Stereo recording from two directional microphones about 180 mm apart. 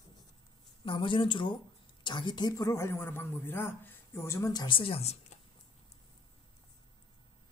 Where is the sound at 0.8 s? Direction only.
30° left (ahead or behind).